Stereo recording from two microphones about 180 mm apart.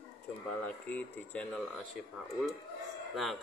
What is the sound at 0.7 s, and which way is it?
Speech, 10° left (ahead or behind).